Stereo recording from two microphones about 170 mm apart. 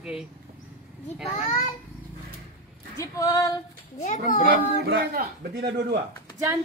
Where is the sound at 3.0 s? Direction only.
20° left (ahead or behind).